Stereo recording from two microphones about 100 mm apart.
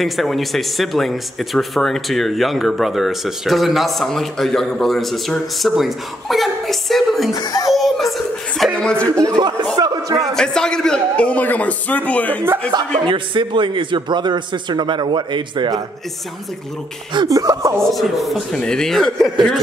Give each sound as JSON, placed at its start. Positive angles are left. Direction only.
{"t": 0.0, "sound": "speech", "side_deg": 0}
{"t": 7.3, "sound": "a child's voice", "side_deg": 40}
{"t": 7.7, "sound": "a sound", "side_deg": 0}
{"t": 8.7, "sound": "a man's voice", "side_deg": 10}
{"t": 9.8, "sound": "speech", "side_deg": -40}
{"t": 10.3, "sound": "a man's voice", "side_deg": 5}
{"t": 13.0, "sound": "a man's voice", "side_deg": -55}
{"t": 17.3, "sound": "speech", "side_deg": -35}
{"t": 17.9, "sound": "speech", "side_deg": 0}